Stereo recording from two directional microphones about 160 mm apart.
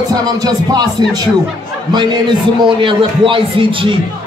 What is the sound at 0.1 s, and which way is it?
Speech, 25° right (ahead or behind).